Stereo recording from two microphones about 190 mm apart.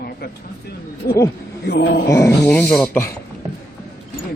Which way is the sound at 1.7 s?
60° left (ahead or behind).